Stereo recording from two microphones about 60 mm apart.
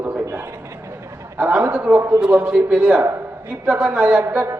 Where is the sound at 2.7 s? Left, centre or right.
Right.